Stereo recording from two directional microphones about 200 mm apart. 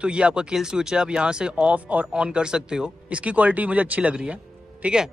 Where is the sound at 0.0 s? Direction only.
5° right (ahead or behind).